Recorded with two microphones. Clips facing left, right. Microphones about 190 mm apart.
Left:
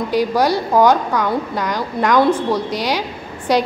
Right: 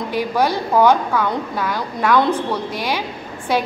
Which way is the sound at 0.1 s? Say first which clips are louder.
Left 3 dB; 15° left (ahead or behind).